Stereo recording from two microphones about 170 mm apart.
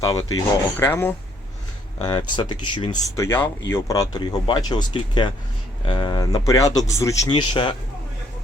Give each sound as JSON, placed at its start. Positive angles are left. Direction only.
{"t": 0.0, "sound": "speech", "side_deg": 20}
{"t": 2.0, "sound": "speech", "side_deg": 25}